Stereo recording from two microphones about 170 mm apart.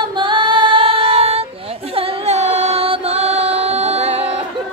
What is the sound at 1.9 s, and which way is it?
Music, 35° right (ahead or behind).